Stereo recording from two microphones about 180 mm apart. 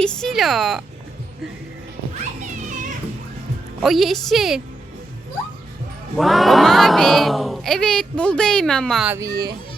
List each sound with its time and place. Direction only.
0.0 s speech: 5° left (ahead or behind)
3.8 s speech: centre (ahead or behind)
6.1 s speech: centre (ahead or behind)
9.0 s speech: 15° right (ahead or behind)
9.3 s speech: 65° right (ahead or behind)